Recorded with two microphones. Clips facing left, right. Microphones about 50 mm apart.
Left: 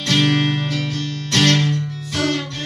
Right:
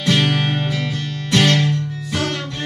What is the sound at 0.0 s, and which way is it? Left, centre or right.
Music, centre.